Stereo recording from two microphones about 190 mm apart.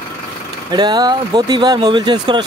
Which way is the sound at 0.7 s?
20° right (ahead or behind).